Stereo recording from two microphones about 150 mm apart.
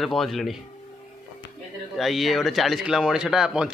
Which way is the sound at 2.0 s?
Centre (ahead or behind).